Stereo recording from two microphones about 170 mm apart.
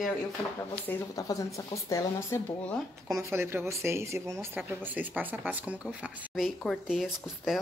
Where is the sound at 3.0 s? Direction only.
15° right (ahead or behind).